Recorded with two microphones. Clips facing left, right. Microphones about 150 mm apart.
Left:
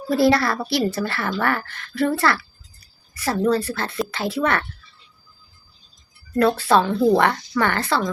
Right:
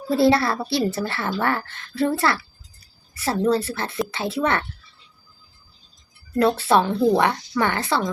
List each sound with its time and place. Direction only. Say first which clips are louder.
0.1 s a woman's voice: even; 25° right (ahead or behind)
6.4 s a woman's voice: left 1 dB; 25° right (ahead or behind)